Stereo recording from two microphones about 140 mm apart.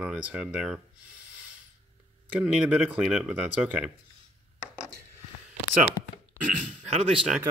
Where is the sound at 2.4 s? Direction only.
5° right (ahead or behind).